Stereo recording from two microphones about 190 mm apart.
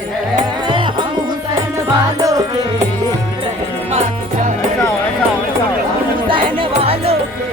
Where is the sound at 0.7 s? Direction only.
25° right (ahead or behind).